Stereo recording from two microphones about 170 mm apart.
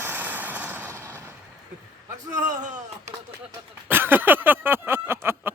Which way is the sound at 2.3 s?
45° right (ahead or behind).